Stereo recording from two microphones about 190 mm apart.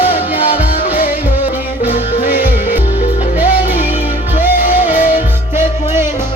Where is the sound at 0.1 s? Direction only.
30° left (ahead or behind).